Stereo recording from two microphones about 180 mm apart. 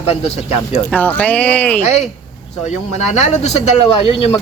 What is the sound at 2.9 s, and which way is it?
Speech, 35° left (ahead or behind).